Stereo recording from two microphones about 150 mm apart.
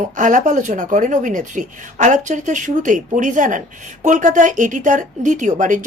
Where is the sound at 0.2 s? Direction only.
60° right (ahead or behind).